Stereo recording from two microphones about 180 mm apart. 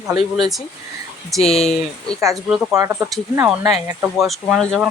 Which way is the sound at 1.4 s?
35° left (ahead or behind).